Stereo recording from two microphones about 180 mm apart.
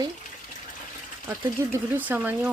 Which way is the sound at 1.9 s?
10° right (ahead or behind).